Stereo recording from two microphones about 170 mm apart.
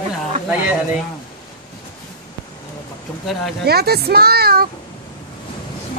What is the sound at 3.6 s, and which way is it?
Speech, 70° right (ahead or behind).